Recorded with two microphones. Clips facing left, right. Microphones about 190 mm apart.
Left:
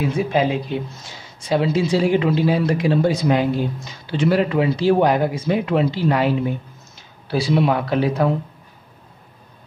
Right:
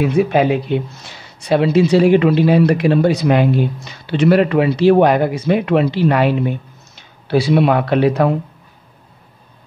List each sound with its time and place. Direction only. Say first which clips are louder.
0.0 s speech: right 5 dB; 65° right (ahead or behind)